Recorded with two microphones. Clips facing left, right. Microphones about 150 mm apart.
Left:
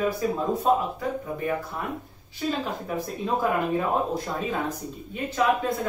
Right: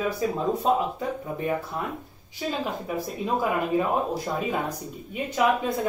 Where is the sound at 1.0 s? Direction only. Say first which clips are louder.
Even; 25° right (ahead or behind).